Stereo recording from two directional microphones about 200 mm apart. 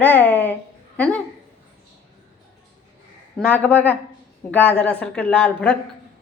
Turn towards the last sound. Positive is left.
turn(degrees=5)  # may be behind; listen again after turning